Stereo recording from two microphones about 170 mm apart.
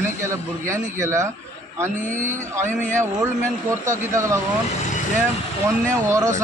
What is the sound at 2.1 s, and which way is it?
Speech, 45° right (ahead or behind).